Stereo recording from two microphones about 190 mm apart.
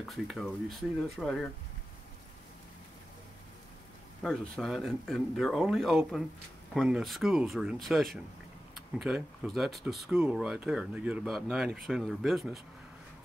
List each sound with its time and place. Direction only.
0.0 s speech: centre (ahead or behind)
4.2 s speech: centre (ahead or behind)